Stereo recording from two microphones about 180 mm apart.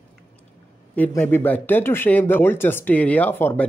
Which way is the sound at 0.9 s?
10° left (ahead or behind).